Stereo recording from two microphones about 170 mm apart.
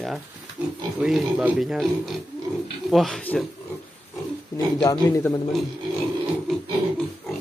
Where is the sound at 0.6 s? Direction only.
5° right (ahead or behind).